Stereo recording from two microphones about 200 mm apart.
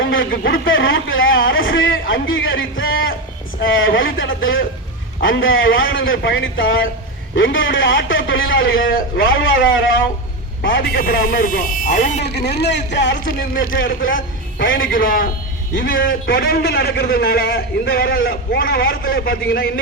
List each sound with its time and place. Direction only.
0.0 s a sound: 75° left (ahead or behind)
0.6 s a man's voice: 75° left (ahead or behind)
8.8 s a man's voice: 45° left (ahead or behind)
9.4 s a man's voice: 75° left (ahead or behind)
10.9 s a man's voice: 45° left (ahead or behind)
12.2 s speech: 55° left (ahead or behind)
13.1 s a man's voice: 45° left (ahead or behind)
13.7 s a man's voice: 75° left (ahead or behind)
14.8 s a man's voice: 45° left (ahead or behind)